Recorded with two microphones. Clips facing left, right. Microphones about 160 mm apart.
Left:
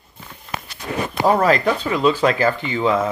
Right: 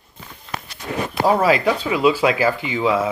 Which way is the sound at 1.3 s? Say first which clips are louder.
Even; 5° right (ahead or behind).